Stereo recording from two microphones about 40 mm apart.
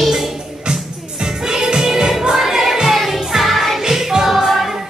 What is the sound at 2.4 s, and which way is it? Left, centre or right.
Music, centre.